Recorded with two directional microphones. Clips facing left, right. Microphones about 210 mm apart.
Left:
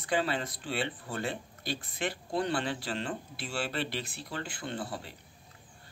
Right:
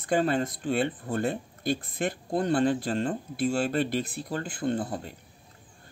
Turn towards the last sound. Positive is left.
turn(degrees=-45)  # may be behind; listen again after turning